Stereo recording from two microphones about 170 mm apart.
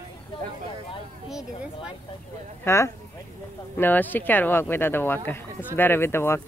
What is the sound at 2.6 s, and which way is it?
Speech, 15° left (ahead or behind).